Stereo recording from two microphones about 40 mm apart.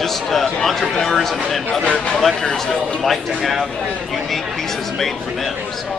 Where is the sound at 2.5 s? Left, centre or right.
Centre.